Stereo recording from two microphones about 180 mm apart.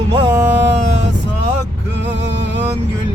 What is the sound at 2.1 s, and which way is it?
Music, 75° right (ahead or behind).